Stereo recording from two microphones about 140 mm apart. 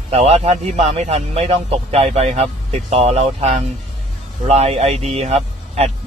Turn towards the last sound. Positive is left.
turn(degrees=-50)  # may be behind; listen again after turning